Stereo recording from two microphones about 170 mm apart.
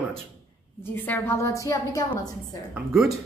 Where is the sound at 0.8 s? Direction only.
10° left (ahead or behind).